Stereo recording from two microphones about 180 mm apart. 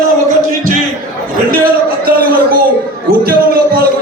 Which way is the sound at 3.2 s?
55° right (ahead or behind).